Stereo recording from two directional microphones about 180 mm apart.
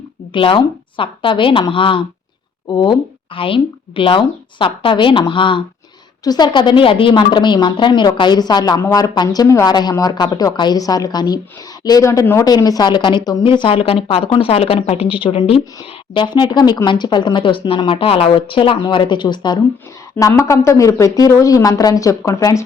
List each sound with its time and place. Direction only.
0.3 s a woman's voice: 30° left (ahead or behind)